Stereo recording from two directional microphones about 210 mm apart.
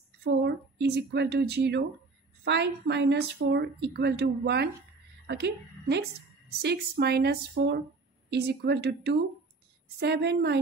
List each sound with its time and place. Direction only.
0.2 s a woman's voice: 55° right (ahead or behind)